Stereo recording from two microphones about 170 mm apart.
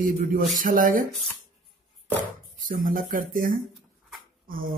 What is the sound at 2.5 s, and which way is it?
Speech, 50° right (ahead or behind).